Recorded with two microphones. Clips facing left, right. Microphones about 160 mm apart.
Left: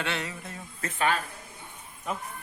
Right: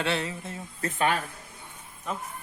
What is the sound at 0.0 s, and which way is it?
Speech, 30° right (ahead or behind).